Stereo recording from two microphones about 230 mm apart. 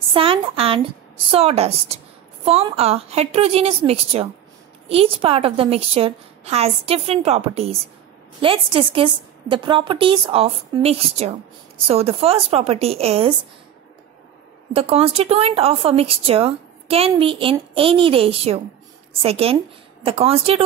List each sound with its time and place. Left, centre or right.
0.1 s speech: right
14.7 s speech: right